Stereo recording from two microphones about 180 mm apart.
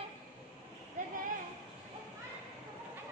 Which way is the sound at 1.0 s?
45° right (ahead or behind).